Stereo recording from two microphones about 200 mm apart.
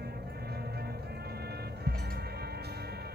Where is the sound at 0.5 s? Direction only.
50° right (ahead or behind).